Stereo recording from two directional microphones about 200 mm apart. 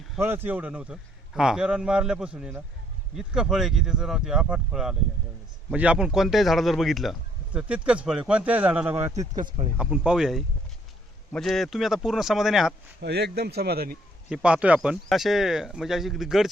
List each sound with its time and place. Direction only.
0.2 s a man's voice: 10° right (ahead or behind)
13.0 s speech: 55° right (ahead or behind)
14.3 s a man's voice: 5° right (ahead or behind)